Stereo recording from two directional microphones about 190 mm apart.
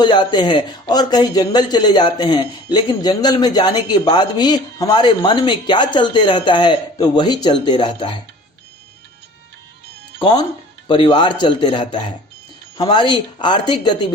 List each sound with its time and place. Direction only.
0.0 s speech: 25° left (ahead or behind)
10.2 s speech: 20° left (ahead or behind)